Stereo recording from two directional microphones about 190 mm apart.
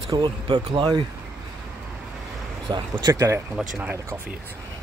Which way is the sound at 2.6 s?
25° right (ahead or behind).